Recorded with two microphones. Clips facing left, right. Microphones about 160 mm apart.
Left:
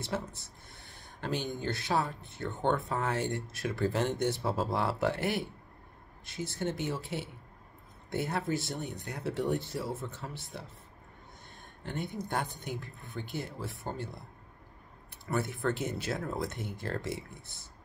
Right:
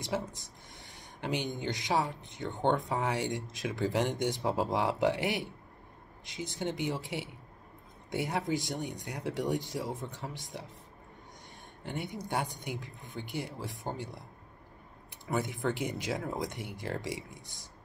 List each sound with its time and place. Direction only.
0.0 s speech: 15° right (ahead or behind)
11.8 s speech: 10° right (ahead or behind)
15.2 s speech: 15° right (ahead or behind)